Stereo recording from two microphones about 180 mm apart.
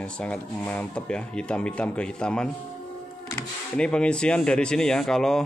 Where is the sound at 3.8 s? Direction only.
5° left (ahead or behind).